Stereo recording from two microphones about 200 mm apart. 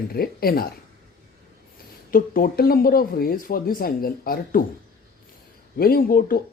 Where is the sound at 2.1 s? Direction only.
45° left (ahead or behind).